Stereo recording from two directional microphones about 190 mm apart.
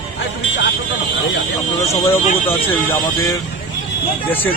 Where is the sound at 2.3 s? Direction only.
30° left (ahead or behind).